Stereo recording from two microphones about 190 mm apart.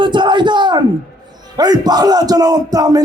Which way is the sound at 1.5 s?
20° right (ahead or behind).